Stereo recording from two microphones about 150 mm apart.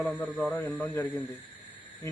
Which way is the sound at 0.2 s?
10° left (ahead or behind).